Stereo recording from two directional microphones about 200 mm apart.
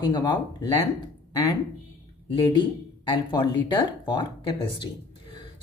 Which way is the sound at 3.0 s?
25° left (ahead or behind).